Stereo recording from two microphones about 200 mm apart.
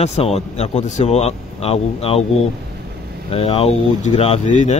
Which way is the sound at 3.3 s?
30° left (ahead or behind).